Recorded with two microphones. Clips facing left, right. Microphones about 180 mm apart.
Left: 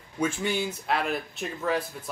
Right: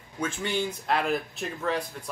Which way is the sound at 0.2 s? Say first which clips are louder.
Left 2 dB; 10° left (ahead or behind).